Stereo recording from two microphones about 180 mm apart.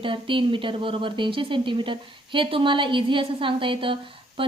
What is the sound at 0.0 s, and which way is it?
A woman's voice, 30° right (ahead or behind).